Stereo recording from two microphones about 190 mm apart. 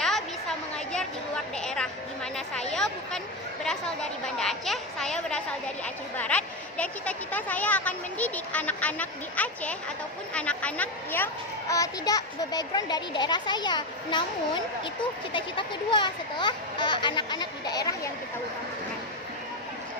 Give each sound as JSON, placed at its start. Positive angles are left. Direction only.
{"t": 0.0, "sound": "a sound", "side_deg": 0}
{"t": 1.5, "sound": "music", "side_deg": 5}
{"t": 2.3, "sound": "a woman's voice", "side_deg": 5}